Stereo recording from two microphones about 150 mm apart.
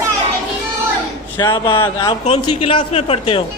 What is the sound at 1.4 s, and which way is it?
Speech, 30° left (ahead or behind).